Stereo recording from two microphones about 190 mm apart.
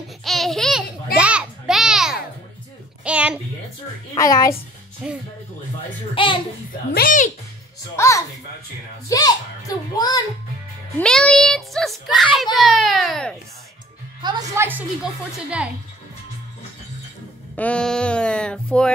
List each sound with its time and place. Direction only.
0.2 s babbling: centre (ahead or behind)
1.1 s a sound: 5° right (ahead or behind)
4.1 s a child's voice: 20° left (ahead or behind)
5.0 s a child's voice: centre (ahead or behind)
6.2 s a child's voice: 25° left (ahead or behind)
6.9 s a child's voice: 50° left (ahead or behind)
7.9 s a child's voice: 15° left (ahead or behind)
11.0 s a child's voice: 5° left (ahead or behind)
14.2 s a woman's voice: 15° right (ahead or behind)
17.6 s a child's voice: 5° left (ahead or behind)